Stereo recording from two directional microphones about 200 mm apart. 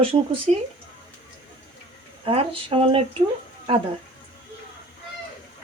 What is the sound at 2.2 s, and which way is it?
Speech, 30° right (ahead or behind).